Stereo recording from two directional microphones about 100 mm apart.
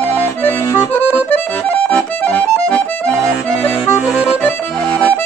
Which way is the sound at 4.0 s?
5° right (ahead or behind).